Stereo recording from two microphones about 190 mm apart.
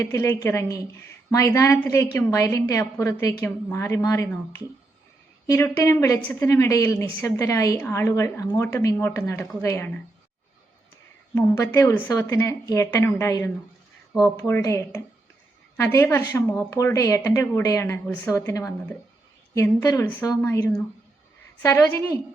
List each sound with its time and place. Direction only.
0.0 s a woman's voice: 15° left (ahead or behind)
11.3 s a woman's voice: 10° left (ahead or behind)